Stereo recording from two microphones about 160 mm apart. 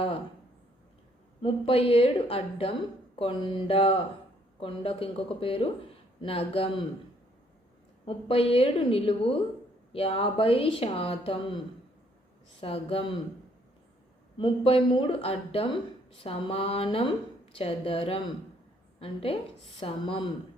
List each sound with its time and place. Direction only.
1.4 s a woman's voice: 35° left (ahead or behind)
8.0 s a woman's voice: 35° left (ahead or behind)
14.3 s a woman's voice: 35° left (ahead or behind)